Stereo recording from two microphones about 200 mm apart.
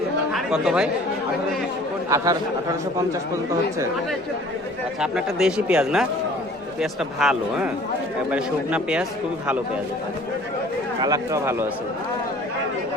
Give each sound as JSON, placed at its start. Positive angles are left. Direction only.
{"t": 0.3, "sound": "speech", "side_deg": -5}
{"t": 2.0, "sound": "speech", "side_deg": -15}
{"t": 4.9, "sound": "speech", "side_deg": -5}
{"t": 11.0, "sound": "speech", "side_deg": -15}